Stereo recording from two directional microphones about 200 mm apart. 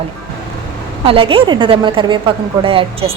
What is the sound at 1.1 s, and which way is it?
A woman's voice, 25° right (ahead or behind).